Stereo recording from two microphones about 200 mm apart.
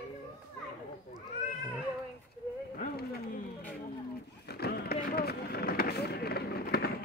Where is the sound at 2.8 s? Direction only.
50° left (ahead or behind).